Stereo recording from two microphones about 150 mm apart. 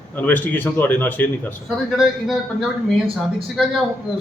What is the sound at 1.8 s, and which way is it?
Speech, centre (ahead or behind).